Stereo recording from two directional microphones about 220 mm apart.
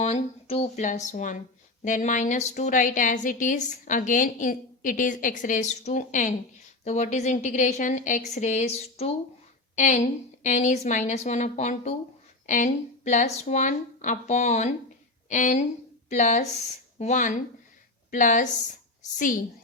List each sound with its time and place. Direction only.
0.0 s a woman's voice: 30° left (ahead or behind)